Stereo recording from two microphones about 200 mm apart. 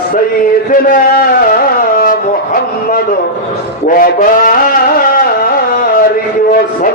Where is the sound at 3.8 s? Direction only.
40° left (ahead or behind).